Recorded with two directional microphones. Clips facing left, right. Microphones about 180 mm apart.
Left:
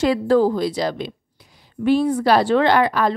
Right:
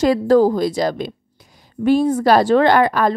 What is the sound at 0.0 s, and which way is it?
A woman's voice, 40° right (ahead or behind).